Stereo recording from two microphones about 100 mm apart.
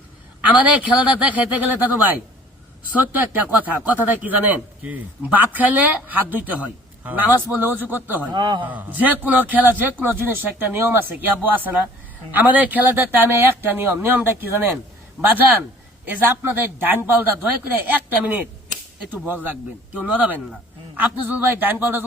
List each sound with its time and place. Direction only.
0.4 s a man's voice: 15° right (ahead or behind)
8.3 s a man's voice: 45° right (ahead or behind)
8.6 s a man's voice: 15° right (ahead or behind)
16.0 s a man's voice: 20° right (ahead or behind)